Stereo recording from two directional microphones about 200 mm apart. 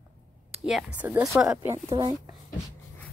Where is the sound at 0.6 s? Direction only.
5° right (ahead or behind).